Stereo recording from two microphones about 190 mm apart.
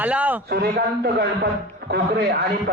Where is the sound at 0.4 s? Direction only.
55° right (ahead or behind).